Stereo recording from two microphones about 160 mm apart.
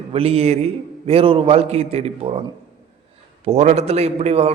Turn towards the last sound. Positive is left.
turn(degrees=-40)  # may be behind; listen again after turning